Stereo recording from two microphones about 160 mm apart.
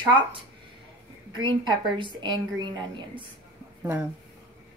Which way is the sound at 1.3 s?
30° right (ahead or behind).